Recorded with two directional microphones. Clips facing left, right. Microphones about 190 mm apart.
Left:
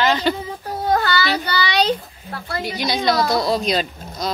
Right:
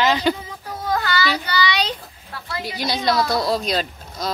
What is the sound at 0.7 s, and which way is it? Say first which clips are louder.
A child's voice: left 4 dB; 35° left (ahead or behind).